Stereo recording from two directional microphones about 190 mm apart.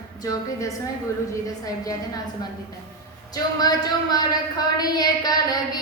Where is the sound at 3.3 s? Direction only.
20° left (ahead or behind).